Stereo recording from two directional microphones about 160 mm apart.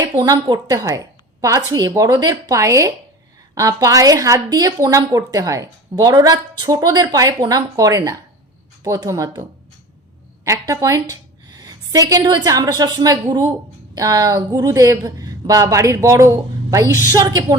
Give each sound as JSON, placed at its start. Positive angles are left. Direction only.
{"t": 0.3, "sound": "a woman's voice", "side_deg": -25}